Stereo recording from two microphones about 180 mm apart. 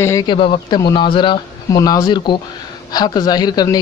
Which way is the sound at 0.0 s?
15° left (ahead or behind).